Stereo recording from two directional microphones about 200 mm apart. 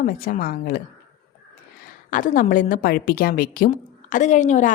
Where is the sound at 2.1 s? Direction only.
40° left (ahead or behind).